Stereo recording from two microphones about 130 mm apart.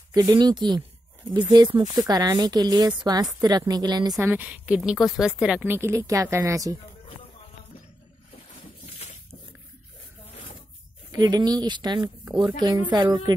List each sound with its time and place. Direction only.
0.1 s a woman's voice: 30° right (ahead or behind)
4.2 s a woman's voice: 15° right (ahead or behind)
5.7 s speech: 20° right (ahead or behind)
11.1 s a woman's voice: 30° right (ahead or behind)